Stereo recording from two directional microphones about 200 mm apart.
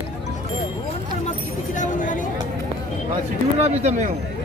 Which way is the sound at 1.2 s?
40° left (ahead or behind).